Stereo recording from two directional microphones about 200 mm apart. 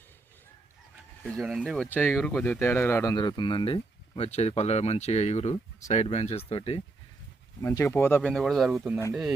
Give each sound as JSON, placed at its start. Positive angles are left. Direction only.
{"t": 1.2, "sound": "speech", "side_deg": 0}
{"t": 7.6, "sound": "speech", "side_deg": 15}